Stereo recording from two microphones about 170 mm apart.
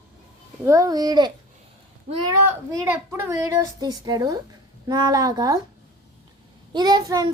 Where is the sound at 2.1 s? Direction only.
40° right (ahead or behind).